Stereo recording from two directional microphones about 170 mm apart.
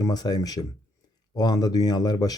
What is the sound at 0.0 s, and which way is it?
Speech, 25° left (ahead or behind).